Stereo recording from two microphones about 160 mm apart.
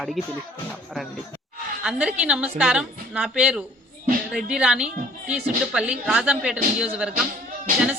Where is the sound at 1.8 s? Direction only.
5° right (ahead or behind).